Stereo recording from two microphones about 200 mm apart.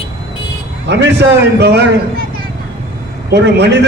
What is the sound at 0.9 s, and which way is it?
Speech, 60° right (ahead or behind).